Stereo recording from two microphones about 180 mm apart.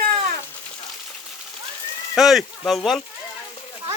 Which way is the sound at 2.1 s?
Centre (ahead or behind).